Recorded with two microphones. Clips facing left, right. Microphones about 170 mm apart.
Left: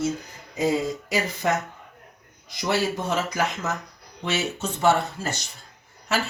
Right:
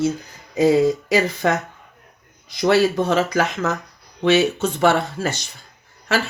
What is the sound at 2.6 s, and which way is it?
Speech, 85° right.